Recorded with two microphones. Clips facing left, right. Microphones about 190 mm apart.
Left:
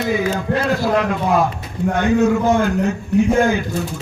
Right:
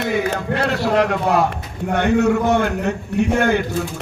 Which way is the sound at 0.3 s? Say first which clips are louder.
Left 2 dB; 65° right (ahead or behind).